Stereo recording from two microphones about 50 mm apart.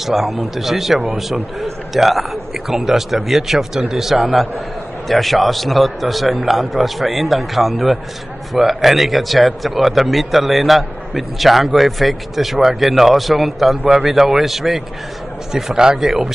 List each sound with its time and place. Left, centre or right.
0.0 s a man's voice: centre